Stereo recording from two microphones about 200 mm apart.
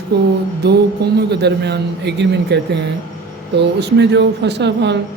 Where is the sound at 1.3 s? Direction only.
60° right (ahead or behind).